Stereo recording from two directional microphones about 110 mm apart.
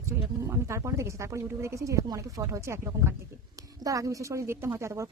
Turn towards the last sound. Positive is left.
turn(degrees=-25)  # may be behind; listen again after turning